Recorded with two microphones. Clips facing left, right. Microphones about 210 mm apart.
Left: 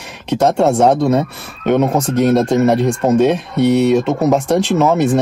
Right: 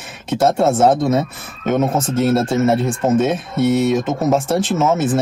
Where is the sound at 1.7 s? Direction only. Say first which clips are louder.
Left 3 dB; 70° left (ahead or behind).